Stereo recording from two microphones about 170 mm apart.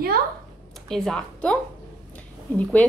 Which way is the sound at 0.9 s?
5° left (ahead or behind).